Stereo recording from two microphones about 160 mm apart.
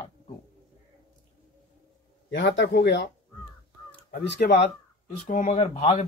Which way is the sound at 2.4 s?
90° left.